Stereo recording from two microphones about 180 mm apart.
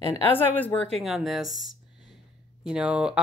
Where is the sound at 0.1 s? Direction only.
10° left (ahead or behind).